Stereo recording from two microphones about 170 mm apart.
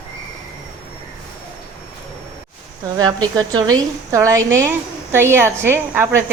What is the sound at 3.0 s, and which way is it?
A woman's voice, 25° right (ahead or behind).